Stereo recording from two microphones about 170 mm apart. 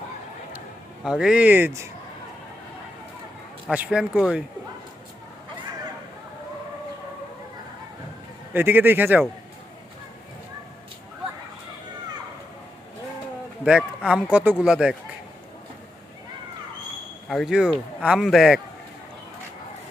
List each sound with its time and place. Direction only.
1.0 s speech: 5° right (ahead or behind)
3.7 s speech: 5° right (ahead or behind)
8.5 s speech: 10° right (ahead or behind)
13.7 s speech: 5° right (ahead or behind)
17.2 s speech: centre (ahead or behind)